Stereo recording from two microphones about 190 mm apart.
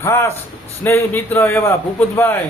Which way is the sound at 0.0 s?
15° left (ahead or behind).